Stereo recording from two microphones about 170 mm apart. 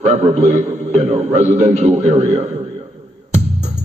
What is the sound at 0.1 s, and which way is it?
A man's voice, 40° right (ahead or behind).